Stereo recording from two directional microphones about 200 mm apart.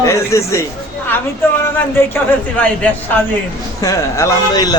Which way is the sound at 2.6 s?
10° left (ahead or behind).